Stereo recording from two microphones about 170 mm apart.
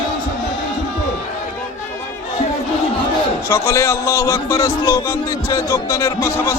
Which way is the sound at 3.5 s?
15° left (ahead or behind).